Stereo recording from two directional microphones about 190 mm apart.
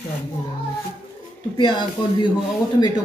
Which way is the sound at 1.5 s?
25° left (ahead or behind).